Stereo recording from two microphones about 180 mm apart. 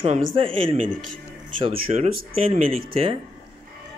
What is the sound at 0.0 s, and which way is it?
Speech, 40° right (ahead or behind).